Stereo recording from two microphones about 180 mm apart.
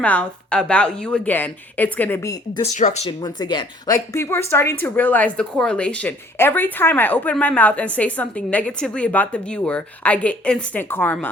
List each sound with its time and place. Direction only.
0.0 s a woman's voice: 5° left (ahead or behind)
2.7 s speech: 40° left (ahead or behind)
3.2 s a woman's voice: 25° left (ahead or behind)